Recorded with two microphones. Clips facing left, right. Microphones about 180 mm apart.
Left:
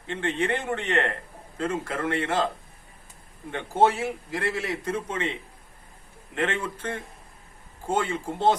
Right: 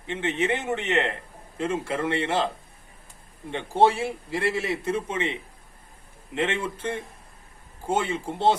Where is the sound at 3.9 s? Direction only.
25° right (ahead or behind).